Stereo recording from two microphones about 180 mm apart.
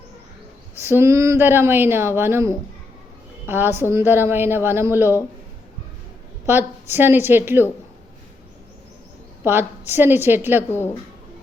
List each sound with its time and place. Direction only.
0.8 s speech: 15° right (ahead or behind)
6.4 s speech: 10° right (ahead or behind)
9.4 s speech: 10° right (ahead or behind)
10.7 s speech: 10° left (ahead or behind)